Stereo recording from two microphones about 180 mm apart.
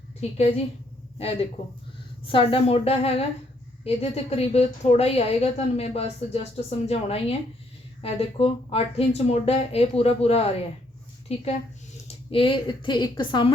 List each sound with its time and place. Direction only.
0.2 s a woman's voice: 35° left (ahead or behind)
2.2 s a woman's voice: 30° left (ahead or behind)